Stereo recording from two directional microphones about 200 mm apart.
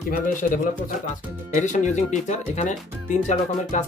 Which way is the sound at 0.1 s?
45° left (ahead or behind).